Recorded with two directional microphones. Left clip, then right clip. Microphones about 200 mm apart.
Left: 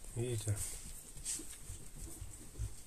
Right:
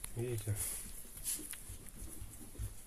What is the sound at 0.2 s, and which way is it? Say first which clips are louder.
Speech: left 1 dB; 15° left (ahead or behind).